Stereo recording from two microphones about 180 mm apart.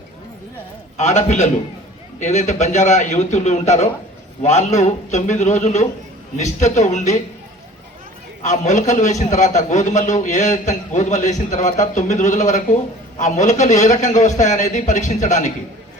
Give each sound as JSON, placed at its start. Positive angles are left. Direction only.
{"t": 0.9, "sound": "a man's voice", "side_deg": 40}
{"t": 8.4, "sound": "a man's voice", "side_deg": 45}